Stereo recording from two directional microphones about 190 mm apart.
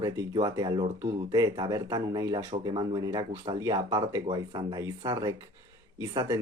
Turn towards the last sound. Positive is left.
turn(degrees=-15)  # may be behind; listen again after turning